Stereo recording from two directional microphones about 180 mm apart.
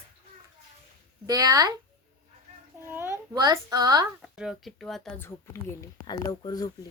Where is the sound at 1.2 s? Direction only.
20° right (ahead or behind).